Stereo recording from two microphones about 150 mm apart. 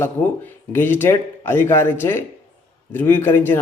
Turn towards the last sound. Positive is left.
turn(degrees=15)  # may be behind; listen again after turning